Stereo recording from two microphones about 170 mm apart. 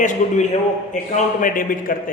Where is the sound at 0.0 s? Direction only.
50° left (ahead or behind).